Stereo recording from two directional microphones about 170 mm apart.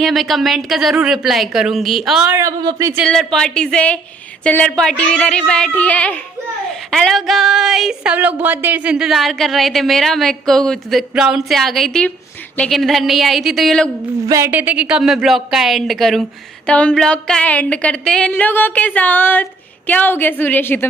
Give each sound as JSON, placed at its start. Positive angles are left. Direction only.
{"t": 0.0, "sound": "a woman's voice", "side_deg": 0}
{"t": 2.3, "sound": "speech", "side_deg": -20}
{"t": 3.1, "sound": "a woman's voice", "side_deg": 5}
{"t": 14.2, "sound": "a woman's voice", "side_deg": -15}